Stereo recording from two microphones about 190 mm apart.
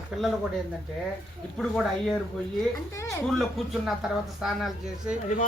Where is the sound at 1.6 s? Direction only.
Centre (ahead or behind).